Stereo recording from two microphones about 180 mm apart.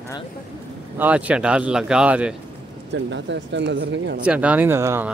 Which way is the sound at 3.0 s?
80° right.